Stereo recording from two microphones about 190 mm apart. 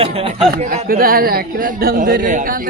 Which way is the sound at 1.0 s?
50° right (ahead or behind).